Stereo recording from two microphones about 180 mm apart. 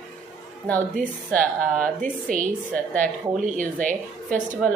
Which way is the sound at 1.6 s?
50° right (ahead or behind).